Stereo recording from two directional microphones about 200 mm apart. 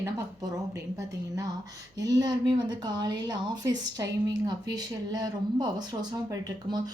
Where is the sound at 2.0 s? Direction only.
20° right (ahead or behind).